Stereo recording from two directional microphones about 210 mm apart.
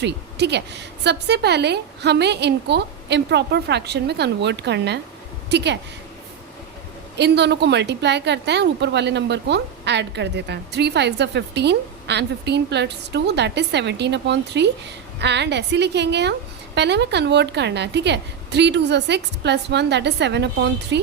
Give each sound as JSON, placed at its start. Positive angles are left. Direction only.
{"t": 0.0, "sound": "a woman's voice", "side_deg": -55}
{"t": 7.2, "sound": "a woman's voice", "side_deg": -55}